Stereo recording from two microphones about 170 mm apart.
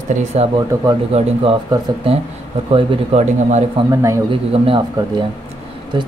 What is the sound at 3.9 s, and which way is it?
Speech, 15° right (ahead or behind).